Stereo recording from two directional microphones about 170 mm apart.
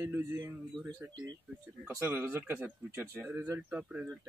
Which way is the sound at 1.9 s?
10° right (ahead or behind).